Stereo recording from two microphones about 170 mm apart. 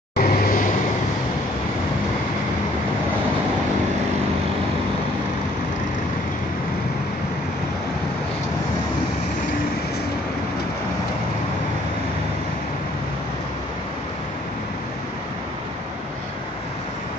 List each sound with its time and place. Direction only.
0.2 s vehicle: 60° left (ahead or behind)